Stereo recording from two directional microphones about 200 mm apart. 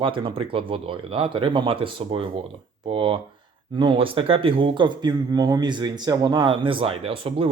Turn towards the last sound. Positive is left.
turn(degrees=-25)  # may be behind; listen again after turning